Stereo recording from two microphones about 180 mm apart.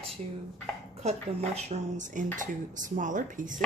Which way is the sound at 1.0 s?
35° right (ahead or behind).